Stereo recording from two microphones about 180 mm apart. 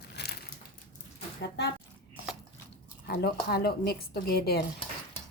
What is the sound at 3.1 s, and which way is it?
Speech, 60° left (ahead or behind).